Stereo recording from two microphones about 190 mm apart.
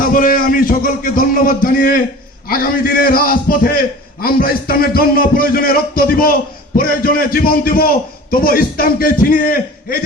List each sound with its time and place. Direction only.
0.0 s a man's voice: 45° left (ahead or behind)